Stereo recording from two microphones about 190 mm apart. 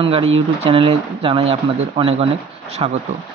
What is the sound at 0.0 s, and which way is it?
Speech, 30° right (ahead or behind).